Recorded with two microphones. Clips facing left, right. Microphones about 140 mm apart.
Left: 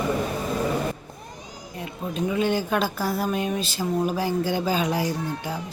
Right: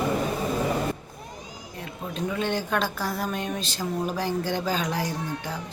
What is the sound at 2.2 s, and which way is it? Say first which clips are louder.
Speech: left 4 dB; 10° left (ahead or behind).